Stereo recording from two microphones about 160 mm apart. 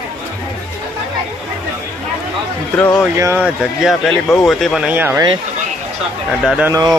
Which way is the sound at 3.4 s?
Centre (ahead or behind).